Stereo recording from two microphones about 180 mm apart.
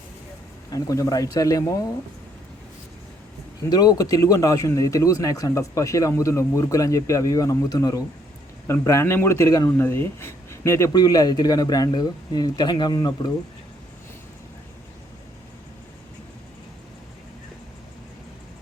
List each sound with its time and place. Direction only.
0.7 s a man's voice: 20° left (ahead or behind)
3.7 s a man's voice: 20° left (ahead or behind)